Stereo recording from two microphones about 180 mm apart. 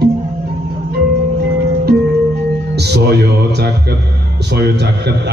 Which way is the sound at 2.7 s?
65° right (ahead or behind).